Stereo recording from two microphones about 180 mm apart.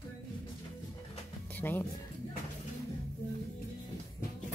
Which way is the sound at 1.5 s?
10° left (ahead or behind).